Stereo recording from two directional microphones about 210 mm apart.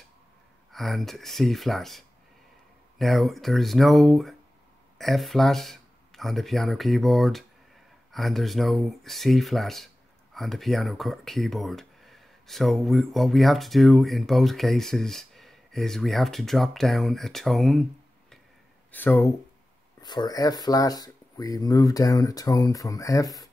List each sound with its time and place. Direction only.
0.7 s speech: centre (ahead or behind)
18.9 s speech: 10° left (ahead or behind)